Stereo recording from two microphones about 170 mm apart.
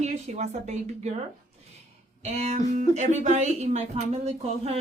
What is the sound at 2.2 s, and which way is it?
Speech, 40° right (ahead or behind).